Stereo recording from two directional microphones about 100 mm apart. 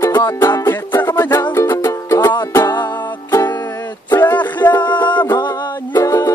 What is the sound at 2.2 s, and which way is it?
Music, 45° left (ahead or behind).